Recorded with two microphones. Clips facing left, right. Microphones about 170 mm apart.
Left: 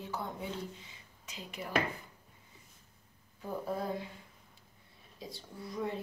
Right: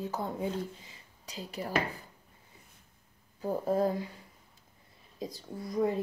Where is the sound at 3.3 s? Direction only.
40° right (ahead or behind).